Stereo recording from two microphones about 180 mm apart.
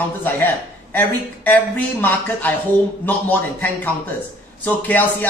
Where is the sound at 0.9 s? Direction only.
10° left (ahead or behind).